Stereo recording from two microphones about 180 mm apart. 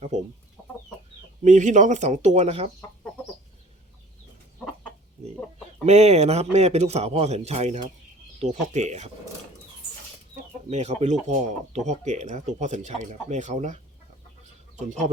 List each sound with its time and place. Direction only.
1.5 s speech: 40° right (ahead or behind)
5.8 s speech: 35° right (ahead or behind)
10.7 s speech: 40° right (ahead or behind)